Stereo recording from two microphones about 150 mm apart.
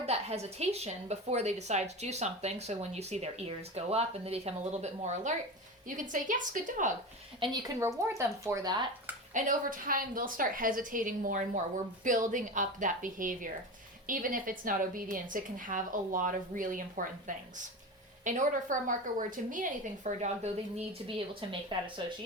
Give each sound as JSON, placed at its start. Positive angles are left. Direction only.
{"t": 0.0, "sound": "a woman's voice", "side_deg": -45}
{"t": 6.0, "sound": "a woman's voice", "side_deg": -60}
{"t": 7.3, "sound": "speech", "side_deg": -35}
{"t": 7.8, "sound": "speech", "side_deg": -20}
{"t": 9.3, "sound": "a woman's voice", "side_deg": -65}
{"t": 21.7, "sound": "speech", "side_deg": -35}